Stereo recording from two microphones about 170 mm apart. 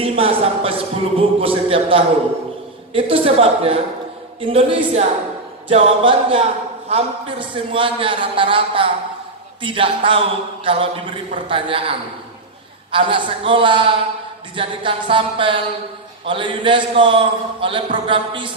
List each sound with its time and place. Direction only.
0.0 s a man's voice: 35° right (ahead or behind)